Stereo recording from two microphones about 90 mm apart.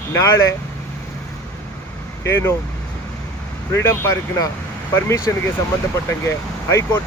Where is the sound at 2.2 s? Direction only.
30° left (ahead or behind).